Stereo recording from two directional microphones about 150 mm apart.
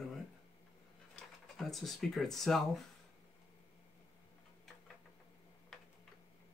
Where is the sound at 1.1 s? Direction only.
Centre (ahead or behind).